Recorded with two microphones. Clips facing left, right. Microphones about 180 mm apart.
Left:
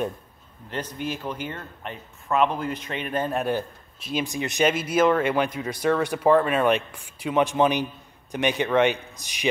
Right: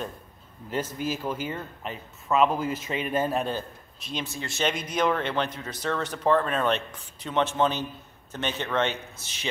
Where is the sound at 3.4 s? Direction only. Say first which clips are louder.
Left 4 dB; 15° left (ahead or behind).